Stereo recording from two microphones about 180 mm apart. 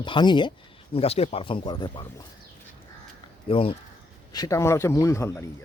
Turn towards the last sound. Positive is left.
turn(degrees=15)  # may be behind; listen again after turning